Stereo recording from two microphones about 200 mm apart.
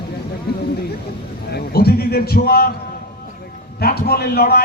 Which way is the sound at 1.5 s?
50° left (ahead or behind).